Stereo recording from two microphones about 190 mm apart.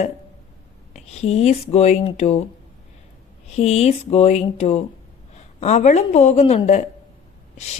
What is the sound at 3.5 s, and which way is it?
Speech, 35° left (ahead or behind).